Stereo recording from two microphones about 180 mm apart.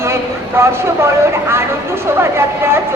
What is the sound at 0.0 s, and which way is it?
Speech, 15° right (ahead or behind).